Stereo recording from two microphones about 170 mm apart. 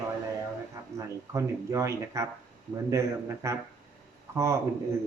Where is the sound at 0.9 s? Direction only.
20° right (ahead or behind).